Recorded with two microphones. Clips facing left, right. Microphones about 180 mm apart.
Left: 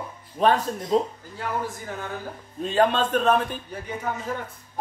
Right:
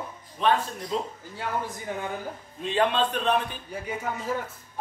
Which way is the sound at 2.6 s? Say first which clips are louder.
Left 3 dB; 45° left (ahead or behind).